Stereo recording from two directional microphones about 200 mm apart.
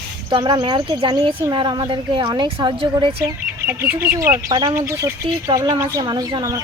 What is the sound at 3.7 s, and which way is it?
Speech, 10° right (ahead or behind).